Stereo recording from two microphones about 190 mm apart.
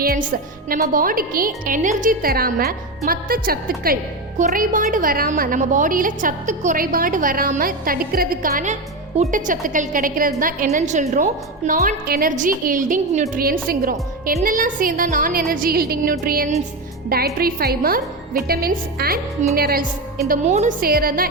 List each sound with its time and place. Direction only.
0.0 s a woman's voice: 50° right (ahead or behind)
20.8 s a woman's voice: 50° right (ahead or behind)